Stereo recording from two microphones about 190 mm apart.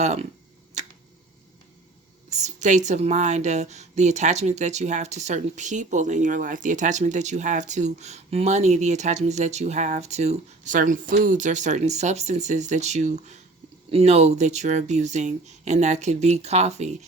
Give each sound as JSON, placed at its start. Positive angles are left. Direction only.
{"t": 0.0, "sound": "a woman's voice", "side_deg": -35}
{"t": 0.8, "sound": "finger snapping", "side_deg": -40}
{"t": 2.3, "sound": "a woman's voice", "side_deg": -40}